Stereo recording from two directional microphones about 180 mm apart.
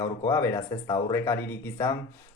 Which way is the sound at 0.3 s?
15° left (ahead or behind).